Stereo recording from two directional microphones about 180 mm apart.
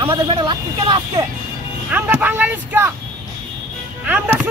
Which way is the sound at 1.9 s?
10° right (ahead or behind).